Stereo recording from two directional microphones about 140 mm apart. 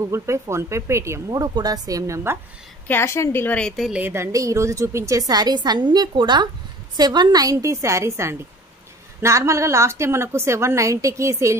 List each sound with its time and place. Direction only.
0.0 s a woman's voice: 20° right (ahead or behind)
2.9 s a woman's voice: 20° left (ahead or behind); by 4.0 s centre (ahead or behind)
4.0 s a woman's voice: 20° right (ahead or behind)